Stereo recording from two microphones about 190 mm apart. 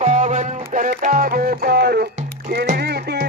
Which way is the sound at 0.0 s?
40° right (ahead or behind).